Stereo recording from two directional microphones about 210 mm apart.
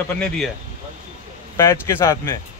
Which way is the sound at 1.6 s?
10° left (ahead or behind).